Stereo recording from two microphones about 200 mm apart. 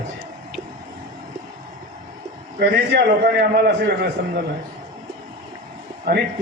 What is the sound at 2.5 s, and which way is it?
A man's voice, 55° right (ahead or behind).